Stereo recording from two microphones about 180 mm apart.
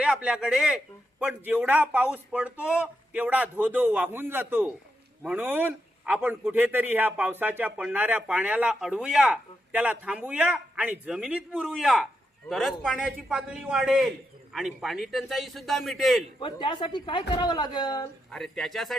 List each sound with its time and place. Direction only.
0.0 s a man's voice: 5° right (ahead or behind)
16.4 s speech: 25° left (ahead or behind)
18.3 s a man's voice: centre (ahead or behind)